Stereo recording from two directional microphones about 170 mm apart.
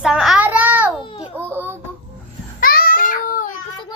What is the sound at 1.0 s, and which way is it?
Speech, 30° left (ahead or behind).